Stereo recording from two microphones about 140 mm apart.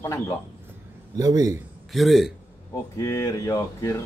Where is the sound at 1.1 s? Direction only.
25° right (ahead or behind).